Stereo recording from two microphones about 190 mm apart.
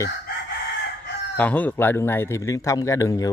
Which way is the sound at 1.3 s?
10° left (ahead or behind).